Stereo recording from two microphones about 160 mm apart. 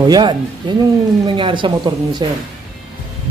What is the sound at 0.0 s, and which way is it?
Speech, 25° right (ahead or behind).